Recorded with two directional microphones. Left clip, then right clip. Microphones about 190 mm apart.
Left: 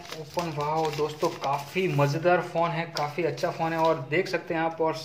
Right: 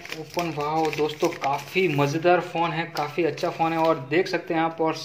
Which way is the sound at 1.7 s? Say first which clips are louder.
Right 5 dB; 35° right (ahead or behind).